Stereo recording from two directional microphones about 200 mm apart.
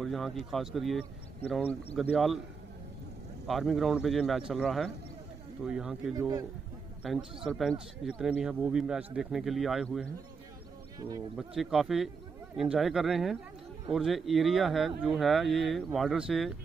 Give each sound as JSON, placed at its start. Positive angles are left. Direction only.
{"t": 0.0, "sound": "speech", "side_deg": 0}
{"t": 3.4, "sound": "speech", "side_deg": 0}
{"t": 6.1, "sound": "a man's voice", "side_deg": -15}
{"t": 7.0, "sound": "a man's voice", "side_deg": 0}
{"t": 11.3, "sound": "speech", "side_deg": 0}